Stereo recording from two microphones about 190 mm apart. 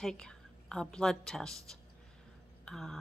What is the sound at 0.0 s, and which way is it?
A woman's voice, 5° left (ahead or behind).